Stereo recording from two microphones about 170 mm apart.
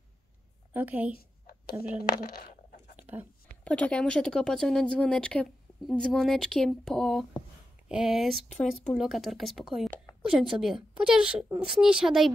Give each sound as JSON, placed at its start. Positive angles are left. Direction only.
{"t": 0.7, "sound": "a woman's voice", "side_deg": -10}
{"t": 1.7, "sound": "speech", "side_deg": 60}
{"t": 3.0, "sound": "whispering", "side_deg": -10}
{"t": 3.6, "sound": "speech", "side_deg": 10}